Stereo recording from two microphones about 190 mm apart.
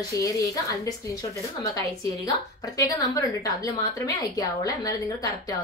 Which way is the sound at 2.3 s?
20° left (ahead or behind).